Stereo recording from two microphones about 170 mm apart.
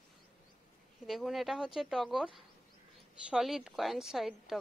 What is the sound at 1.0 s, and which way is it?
Speech, centre (ahead or behind).